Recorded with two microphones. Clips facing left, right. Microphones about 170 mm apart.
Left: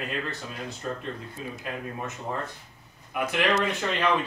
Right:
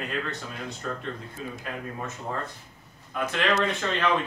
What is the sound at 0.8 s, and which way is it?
Speech, 20° left (ahead or behind).